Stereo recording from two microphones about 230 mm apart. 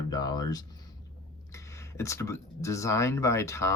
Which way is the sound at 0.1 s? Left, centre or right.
Centre.